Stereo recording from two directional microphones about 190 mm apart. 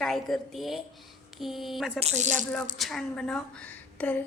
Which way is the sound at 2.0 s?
35° right (ahead or behind).